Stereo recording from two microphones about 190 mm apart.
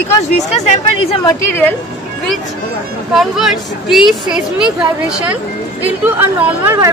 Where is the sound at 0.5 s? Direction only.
35° left (ahead or behind).